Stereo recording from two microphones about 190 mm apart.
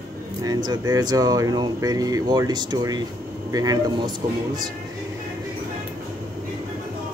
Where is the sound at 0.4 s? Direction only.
20° right (ahead or behind).